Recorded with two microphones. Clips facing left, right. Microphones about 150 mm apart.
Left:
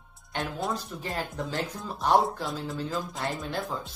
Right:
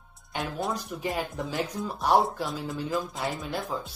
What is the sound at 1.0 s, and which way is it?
Speech, 20° right (ahead or behind).